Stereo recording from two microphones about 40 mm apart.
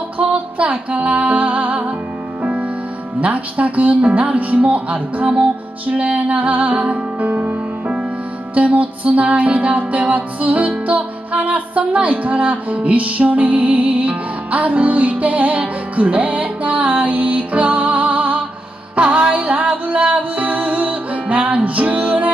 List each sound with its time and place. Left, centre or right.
0.2 s music: right
3.2 s music: right
8.5 s music: right